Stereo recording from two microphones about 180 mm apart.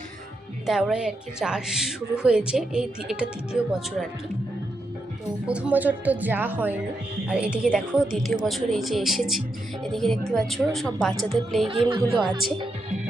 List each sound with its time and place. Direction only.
0.6 s a woman's voice: centre (ahead or behind)
5.5 s a woman's voice: 5° right (ahead or behind)
11.7 s speech: 30° right (ahead or behind)